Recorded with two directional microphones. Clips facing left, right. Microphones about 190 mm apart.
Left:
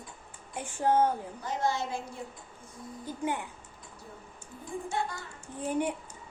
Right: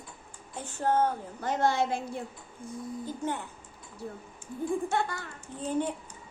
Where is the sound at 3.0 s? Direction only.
10° left (ahead or behind).